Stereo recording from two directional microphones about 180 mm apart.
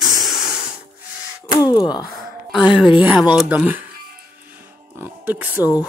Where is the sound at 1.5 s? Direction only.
20° left (ahead or behind).